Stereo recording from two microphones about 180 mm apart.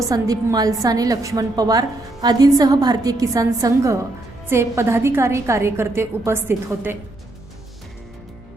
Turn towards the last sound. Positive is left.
turn(degrees=-10)  # may be behind; listen again after turning